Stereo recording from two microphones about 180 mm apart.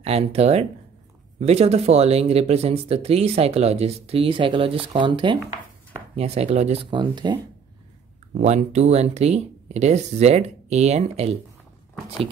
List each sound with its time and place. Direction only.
0.0 s speech: 35° right (ahead or behind)
8.4 s speech: 40° right (ahead or behind)